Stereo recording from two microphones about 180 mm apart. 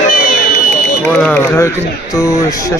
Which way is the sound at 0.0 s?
45° left (ahead or behind).